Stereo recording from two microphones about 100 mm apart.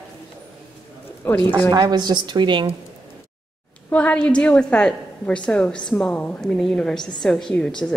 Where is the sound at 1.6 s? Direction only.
45° right (ahead or behind).